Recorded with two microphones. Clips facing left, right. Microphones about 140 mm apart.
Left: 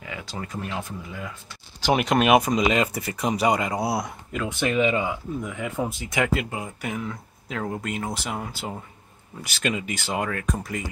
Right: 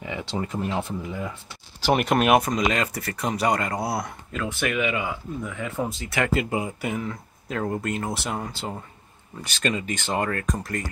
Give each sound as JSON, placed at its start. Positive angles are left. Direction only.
{"t": 0.0, "sound": "speech", "side_deg": -25}
{"t": 1.8, "sound": "speech", "side_deg": -5}
{"t": 2.5, "sound": "speech", "side_deg": 15}
{"t": 2.9, "sound": "speech", "side_deg": 5}
{"t": 4.3, "sound": "speech", "side_deg": 15}
{"t": 5.4, "sound": "speech", "side_deg": 15}
{"t": 6.3, "sound": "speech", "side_deg": -5}